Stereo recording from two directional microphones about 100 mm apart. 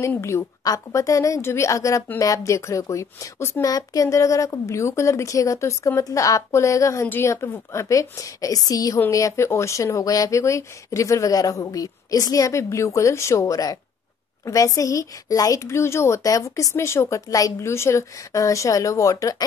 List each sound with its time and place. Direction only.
0.2 s a woman's voice: 30° left (ahead or behind)